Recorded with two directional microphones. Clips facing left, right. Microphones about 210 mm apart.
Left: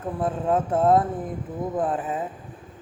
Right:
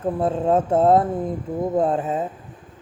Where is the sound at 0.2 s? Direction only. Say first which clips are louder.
Right 3 dB; 25° right (ahead or behind).